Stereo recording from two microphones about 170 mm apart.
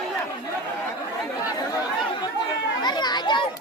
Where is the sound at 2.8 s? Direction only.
25° left (ahead or behind).